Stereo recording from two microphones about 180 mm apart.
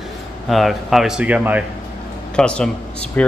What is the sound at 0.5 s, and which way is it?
Speech, centre (ahead or behind).